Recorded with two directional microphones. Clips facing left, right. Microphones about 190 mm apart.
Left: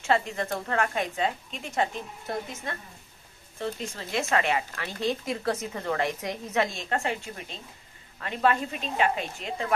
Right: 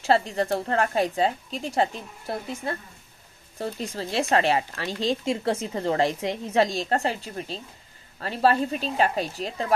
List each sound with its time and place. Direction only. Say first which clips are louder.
0.0 s a woman's voice: right 4 dB; 35° right (ahead or behind)